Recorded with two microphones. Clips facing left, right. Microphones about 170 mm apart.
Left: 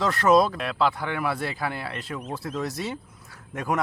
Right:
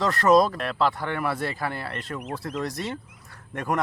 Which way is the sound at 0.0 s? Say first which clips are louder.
Right 1 dB; centre (ahead or behind).